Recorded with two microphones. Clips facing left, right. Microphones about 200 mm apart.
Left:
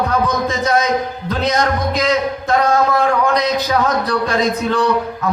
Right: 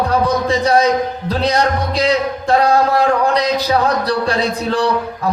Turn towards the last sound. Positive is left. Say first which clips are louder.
# even
turn(degrees=-35)  # may be behind; listen again after turning